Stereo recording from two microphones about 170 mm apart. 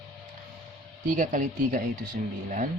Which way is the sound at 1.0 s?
50° right (ahead or behind).